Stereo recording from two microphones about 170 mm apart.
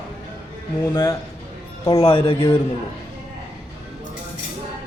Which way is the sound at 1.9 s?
30° left (ahead or behind).